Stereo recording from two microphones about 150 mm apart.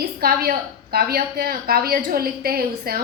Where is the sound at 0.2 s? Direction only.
85° right.